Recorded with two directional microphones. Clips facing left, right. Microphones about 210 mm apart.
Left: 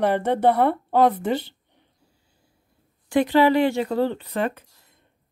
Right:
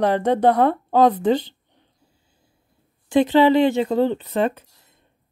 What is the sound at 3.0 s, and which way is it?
Speech, 20° right (ahead or behind).